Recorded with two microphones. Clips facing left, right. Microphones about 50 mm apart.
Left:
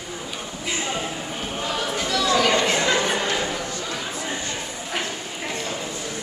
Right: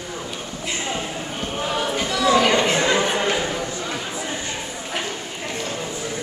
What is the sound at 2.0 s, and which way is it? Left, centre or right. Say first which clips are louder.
Chatter: right 3 dB; centre.